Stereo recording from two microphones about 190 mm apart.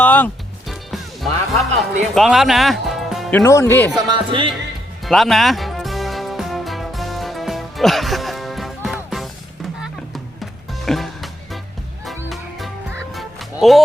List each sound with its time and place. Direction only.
0.0 s music: 10° left (ahead or behind)
2.1 s speech: centre (ahead or behind)
3.9 s speech: 25° right (ahead or behind)
5.0 s music: centre (ahead or behind)
13.1 s fowl: centre (ahead or behind)